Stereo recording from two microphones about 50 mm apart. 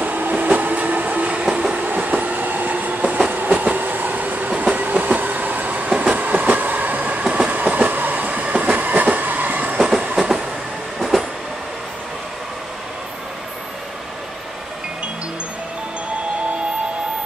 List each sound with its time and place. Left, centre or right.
0.0 s train: right
1.4 s train: centre
1.8 s train: right
5.9 s train: centre
6.1 s train: right
7.2 s train: right
9.7 s train: centre